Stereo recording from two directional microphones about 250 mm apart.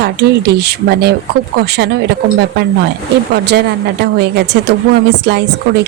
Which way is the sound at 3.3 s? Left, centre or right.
Right.